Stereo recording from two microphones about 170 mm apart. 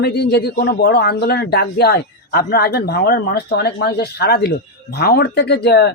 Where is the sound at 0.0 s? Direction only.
75° left (ahead or behind).